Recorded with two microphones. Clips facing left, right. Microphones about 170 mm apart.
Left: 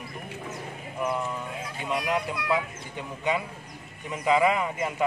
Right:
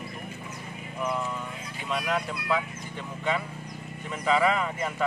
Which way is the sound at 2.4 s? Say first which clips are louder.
Left 1 dB; 15° left (ahead or behind).